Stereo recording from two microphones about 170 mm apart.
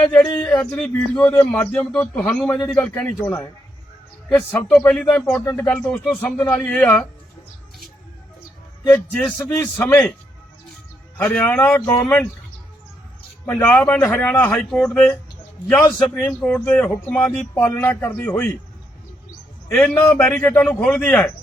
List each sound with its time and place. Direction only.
0.4 s speech: 5° left (ahead or behind)
8.9 s speech: 5° left (ahead or behind)
11.2 s speech: 5° left (ahead or behind)
13.4 s speech: 5° left (ahead or behind)
19.7 s speech: 5° left (ahead or behind)